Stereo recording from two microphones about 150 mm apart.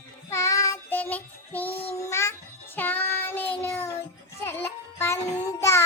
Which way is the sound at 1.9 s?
20° left (ahead or behind).